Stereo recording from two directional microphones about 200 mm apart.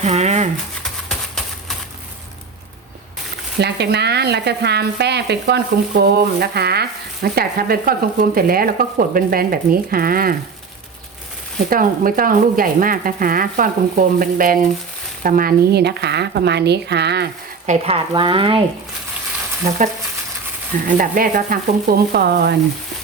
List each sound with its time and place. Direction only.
0.0 s speech: 35° right (ahead or behind)
0.8 s a sound: centre (ahead or behind)
3.6 s speech: 55° right (ahead or behind)
11.7 s speech: 45° right (ahead or behind)
17.7 s speech: 30° right (ahead or behind)
20.8 s speech: 45° right (ahead or behind)